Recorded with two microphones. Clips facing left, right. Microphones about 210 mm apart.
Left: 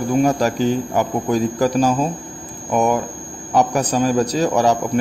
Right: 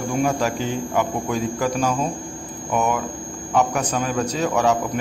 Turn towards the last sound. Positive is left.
turn(degrees=35)  # may be behind; listen again after turning